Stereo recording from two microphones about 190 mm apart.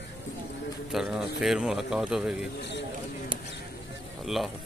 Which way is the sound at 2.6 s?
65° left (ahead or behind).